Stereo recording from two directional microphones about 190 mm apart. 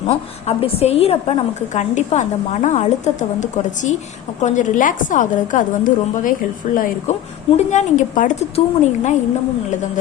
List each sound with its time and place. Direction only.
0.1 s a woman's voice: 30° left (ahead or behind)
7.5 s a woman's voice: 40° left (ahead or behind)